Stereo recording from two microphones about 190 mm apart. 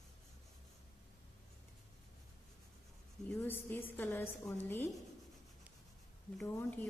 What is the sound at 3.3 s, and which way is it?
A woman's voice, 10° left (ahead or behind).